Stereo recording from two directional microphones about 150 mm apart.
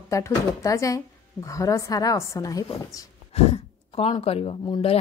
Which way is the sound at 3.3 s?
45° left (ahead or behind).